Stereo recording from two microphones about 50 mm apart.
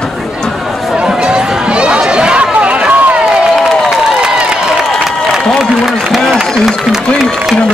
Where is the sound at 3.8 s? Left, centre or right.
Centre.